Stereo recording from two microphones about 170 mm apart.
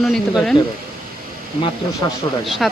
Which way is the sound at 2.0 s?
25° left (ahead or behind).